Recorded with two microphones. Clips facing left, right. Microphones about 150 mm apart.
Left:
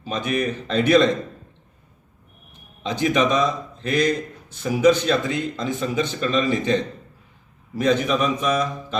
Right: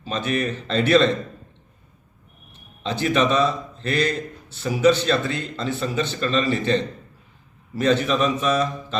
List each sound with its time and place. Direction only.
0.0 s a man's voice: 10° left (ahead or behind)
2.8 s a man's voice: 15° left (ahead or behind)